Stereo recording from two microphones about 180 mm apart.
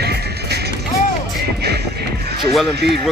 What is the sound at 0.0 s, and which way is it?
Music, 65° right (ahead or behind).